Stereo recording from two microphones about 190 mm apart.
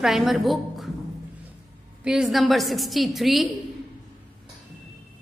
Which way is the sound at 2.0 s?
5° right (ahead or behind).